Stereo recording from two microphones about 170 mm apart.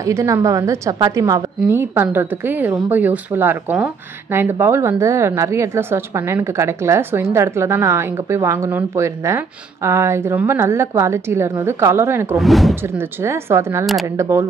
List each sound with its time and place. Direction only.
0.0 s a woman's voice: 20° right (ahead or behind)
12.4 s speech: centre (ahead or behind)
12.8 s speech: 15° right (ahead or behind)